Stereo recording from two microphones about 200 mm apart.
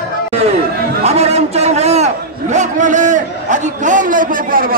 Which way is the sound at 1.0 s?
30° right (ahead or behind).